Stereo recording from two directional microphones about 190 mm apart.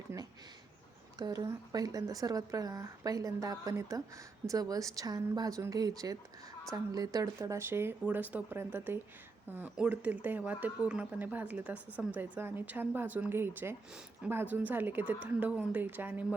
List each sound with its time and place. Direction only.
1.2 s speech: 20° right (ahead or behind)